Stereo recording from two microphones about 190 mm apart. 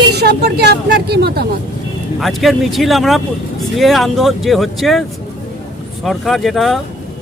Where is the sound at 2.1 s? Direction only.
Centre (ahead or behind).